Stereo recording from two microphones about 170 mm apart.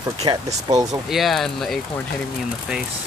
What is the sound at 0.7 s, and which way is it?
Speech, 20° right (ahead or behind).